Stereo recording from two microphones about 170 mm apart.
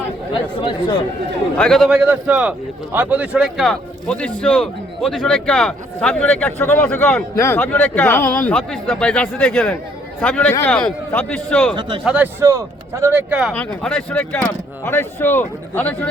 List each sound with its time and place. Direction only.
0.5 s speech: 25° left (ahead or behind)
1.5 s a man's voice: 5° left (ahead or behind)
12.0 s speech: 10° right (ahead or behind)
13.5 s speech: 10° left (ahead or behind)